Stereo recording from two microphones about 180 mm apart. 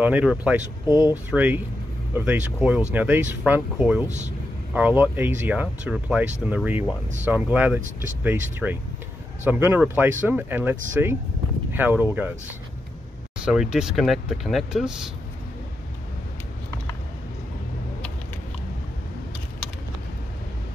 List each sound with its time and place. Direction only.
0.0 s speech: 5° right (ahead or behind)
7.8 s speech: 45° right (ahead or behind)
8.2 s speech: 10° right (ahead or behind)
13.4 s speech: 5° right (ahead or behind)